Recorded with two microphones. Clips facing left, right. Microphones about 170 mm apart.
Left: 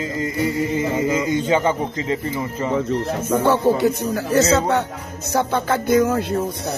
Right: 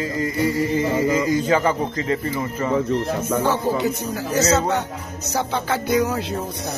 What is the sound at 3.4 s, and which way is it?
Speech, 55° left (ahead or behind).